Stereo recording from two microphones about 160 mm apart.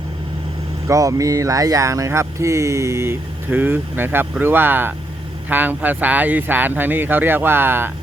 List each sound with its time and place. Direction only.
0.9 s speech: 20° right (ahead or behind)